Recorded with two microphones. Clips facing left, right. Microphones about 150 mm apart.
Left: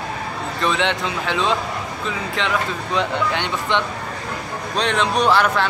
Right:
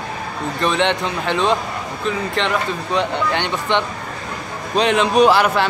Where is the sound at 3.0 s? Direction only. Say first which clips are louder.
Right 1 dB; centre (ahead or behind).